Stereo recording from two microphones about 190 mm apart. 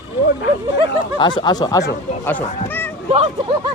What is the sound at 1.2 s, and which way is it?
Speech, 25° left (ahead or behind).